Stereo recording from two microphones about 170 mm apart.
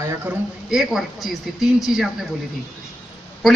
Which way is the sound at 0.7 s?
5° right (ahead or behind).